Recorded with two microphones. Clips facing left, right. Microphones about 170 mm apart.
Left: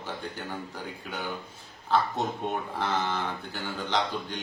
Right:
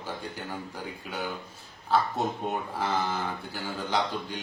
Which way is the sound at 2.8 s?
5° right (ahead or behind).